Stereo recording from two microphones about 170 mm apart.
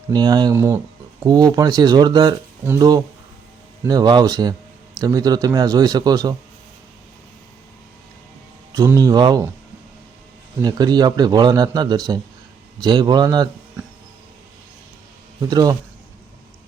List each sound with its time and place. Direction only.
0.1 s a man's voice: 25° right (ahead or behind)
8.7 s a man's voice: 20° right (ahead or behind)
10.6 s a man's voice: 25° right (ahead or behind)
15.4 s a man's voice: 20° right (ahead or behind)